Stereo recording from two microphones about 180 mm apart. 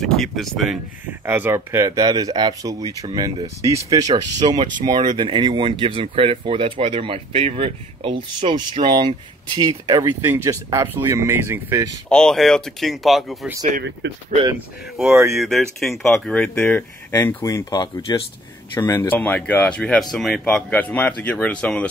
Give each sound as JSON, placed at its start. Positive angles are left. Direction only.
{"t": 0.0, "sound": "speech", "side_deg": 0}
{"t": 1.2, "sound": "speech", "side_deg": -10}
{"t": 12.1, "sound": "speech", "side_deg": 5}
{"t": 14.0, "sound": "speech", "side_deg": -65}
{"t": 15.2, "sound": "speech", "side_deg": 0}